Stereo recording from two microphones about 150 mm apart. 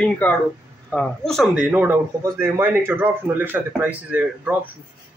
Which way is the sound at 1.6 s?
10° right (ahead or behind).